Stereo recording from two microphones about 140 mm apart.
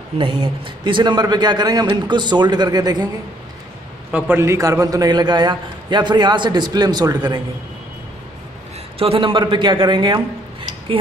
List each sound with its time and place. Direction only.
0.2 s a man's voice: 35° right (ahead or behind)
4.1 s a man's voice: 15° right (ahead or behind)
8.9 s a man's voice: 45° right (ahead or behind)